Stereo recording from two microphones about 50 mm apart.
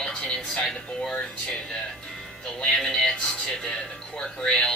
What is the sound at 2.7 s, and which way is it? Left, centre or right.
Speech, centre.